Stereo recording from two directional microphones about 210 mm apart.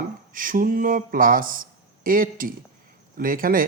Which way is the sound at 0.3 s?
40° right (ahead or behind).